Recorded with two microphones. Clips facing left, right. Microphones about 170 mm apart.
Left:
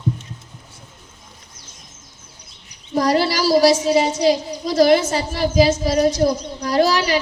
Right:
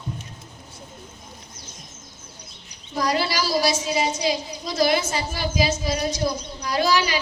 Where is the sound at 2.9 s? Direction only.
40° left (ahead or behind).